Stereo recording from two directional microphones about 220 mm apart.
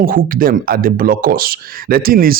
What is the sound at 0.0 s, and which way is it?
Speech, 40° right (ahead or behind).